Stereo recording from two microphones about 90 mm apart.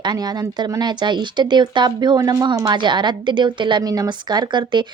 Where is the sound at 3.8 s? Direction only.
45° right (ahead or behind).